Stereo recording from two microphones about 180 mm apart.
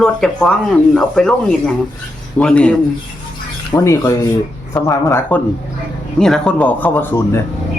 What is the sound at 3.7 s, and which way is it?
Speech, 15° left (ahead or behind).